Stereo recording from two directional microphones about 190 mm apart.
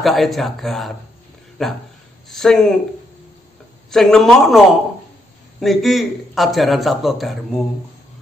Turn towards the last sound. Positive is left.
turn(degrees=0)  # may be behind; listen again after turning